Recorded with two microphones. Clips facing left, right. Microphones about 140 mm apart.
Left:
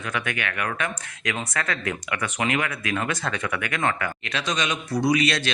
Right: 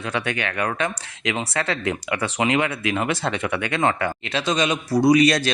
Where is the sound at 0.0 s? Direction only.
30° right (ahead or behind).